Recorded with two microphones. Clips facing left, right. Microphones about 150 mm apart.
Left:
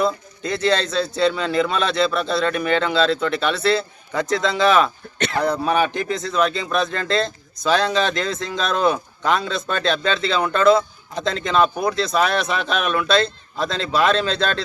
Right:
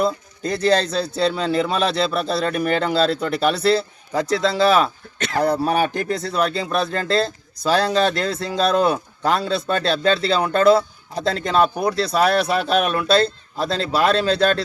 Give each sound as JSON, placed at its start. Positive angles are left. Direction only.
{"t": 0.4, "sound": "speech", "side_deg": -40}
{"t": 5.1, "sound": "speech", "side_deg": 0}
{"t": 5.6, "sound": "speech", "side_deg": -40}